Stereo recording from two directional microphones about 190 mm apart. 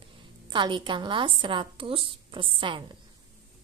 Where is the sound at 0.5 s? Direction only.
25° right (ahead or behind).